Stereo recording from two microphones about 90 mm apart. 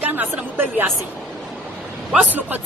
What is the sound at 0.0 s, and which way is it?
Speech, 20° right (ahead or behind).